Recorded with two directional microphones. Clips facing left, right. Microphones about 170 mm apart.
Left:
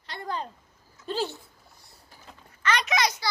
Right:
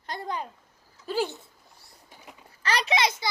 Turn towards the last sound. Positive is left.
turn(degrees=-25)  # may be behind; listen again after turning